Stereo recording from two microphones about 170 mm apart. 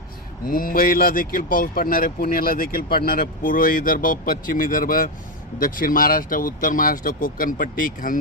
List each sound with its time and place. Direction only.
0.4 s speech: 55° left (ahead or behind)